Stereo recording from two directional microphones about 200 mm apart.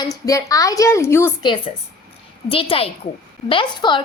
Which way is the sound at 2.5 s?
25° left (ahead or behind).